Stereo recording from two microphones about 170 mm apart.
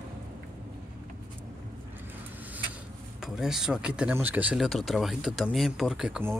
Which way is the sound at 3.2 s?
Centre (ahead or behind).